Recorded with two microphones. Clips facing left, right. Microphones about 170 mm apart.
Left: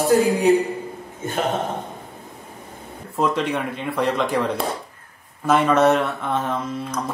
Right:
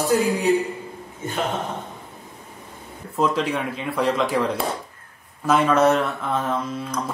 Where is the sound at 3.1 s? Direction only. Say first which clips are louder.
Even; centre (ahead or behind).